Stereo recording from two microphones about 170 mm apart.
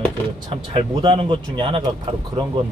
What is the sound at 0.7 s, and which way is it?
A man's voice, 30° right (ahead or behind).